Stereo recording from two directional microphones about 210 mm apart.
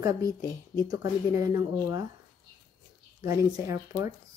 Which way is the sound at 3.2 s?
15° right (ahead or behind).